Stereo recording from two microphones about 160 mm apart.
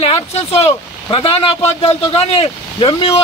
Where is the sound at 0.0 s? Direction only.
40° left (ahead or behind).